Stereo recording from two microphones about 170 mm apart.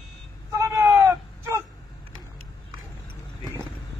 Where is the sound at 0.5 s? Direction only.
15° right (ahead or behind).